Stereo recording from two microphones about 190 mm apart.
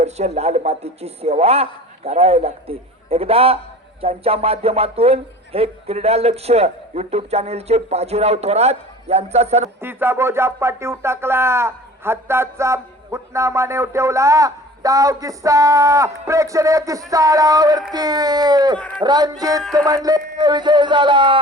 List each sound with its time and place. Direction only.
0.0 s a man's voice: 35° right (ahead or behind)
9.8 s speech: 10° right (ahead or behind)